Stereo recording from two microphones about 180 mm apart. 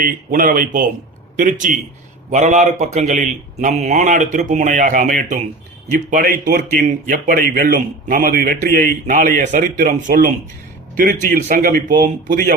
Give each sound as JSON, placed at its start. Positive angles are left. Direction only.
{"t": 0.0, "sound": "a man's voice", "side_deg": -50}